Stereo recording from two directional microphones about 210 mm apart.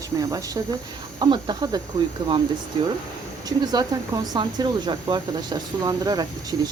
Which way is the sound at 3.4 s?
20° right (ahead or behind).